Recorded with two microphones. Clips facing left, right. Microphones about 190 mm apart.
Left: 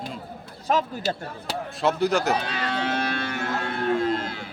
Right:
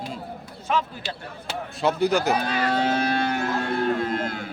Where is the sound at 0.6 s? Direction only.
40° left (ahead or behind).